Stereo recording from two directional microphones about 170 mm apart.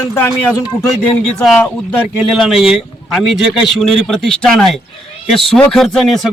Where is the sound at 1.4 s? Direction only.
5° left (ahead or behind).